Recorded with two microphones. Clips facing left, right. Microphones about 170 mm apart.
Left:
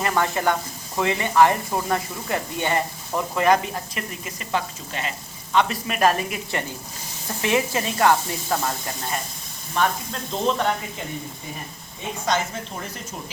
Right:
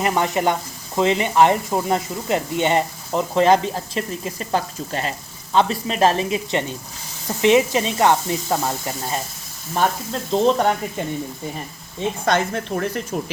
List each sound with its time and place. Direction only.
0.0 s speech: 20° right (ahead or behind)
9.7 s sizzle: 35° right (ahead or behind)
12.2 s speech: 60° right (ahead or behind)